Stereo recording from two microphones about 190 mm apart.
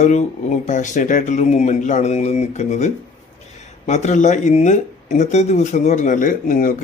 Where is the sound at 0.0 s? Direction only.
35° left (ahead or behind).